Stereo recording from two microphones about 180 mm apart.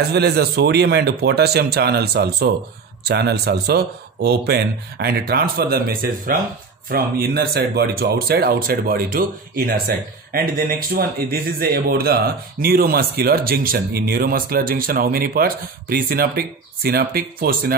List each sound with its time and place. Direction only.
0.1 s speech: 65° right (ahead or behind)